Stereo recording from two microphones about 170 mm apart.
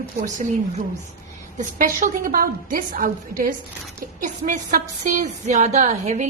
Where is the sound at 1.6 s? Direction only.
50° right (ahead or behind).